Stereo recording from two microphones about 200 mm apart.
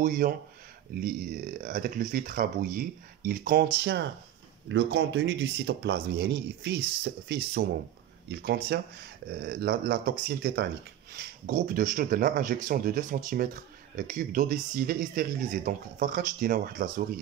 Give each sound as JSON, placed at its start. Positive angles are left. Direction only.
{"t": 0.0, "sound": "speech", "side_deg": -45}